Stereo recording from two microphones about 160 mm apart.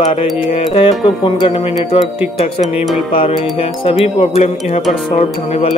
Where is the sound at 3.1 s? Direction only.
35° left (ahead or behind).